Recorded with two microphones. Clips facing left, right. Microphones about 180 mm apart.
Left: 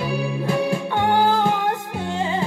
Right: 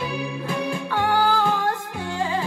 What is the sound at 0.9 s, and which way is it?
Music, 20° left (ahead or behind).